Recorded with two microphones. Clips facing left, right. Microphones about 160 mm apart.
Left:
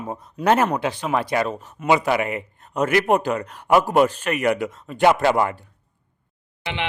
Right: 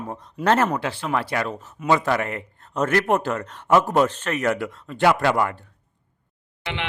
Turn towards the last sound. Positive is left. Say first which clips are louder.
# left 2 dB
turn(degrees=5)  # may be behind; listen again after turning